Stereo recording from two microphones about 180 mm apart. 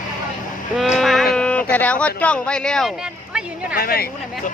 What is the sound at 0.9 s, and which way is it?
Speech, centre (ahead or behind).